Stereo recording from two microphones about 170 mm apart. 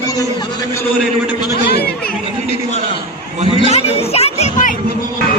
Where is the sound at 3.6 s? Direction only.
35° left (ahead or behind).